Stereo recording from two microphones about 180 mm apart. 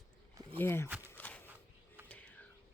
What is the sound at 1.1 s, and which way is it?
Walk, 10° left (ahead or behind).